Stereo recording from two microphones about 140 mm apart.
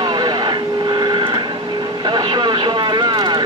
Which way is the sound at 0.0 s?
35° right (ahead or behind).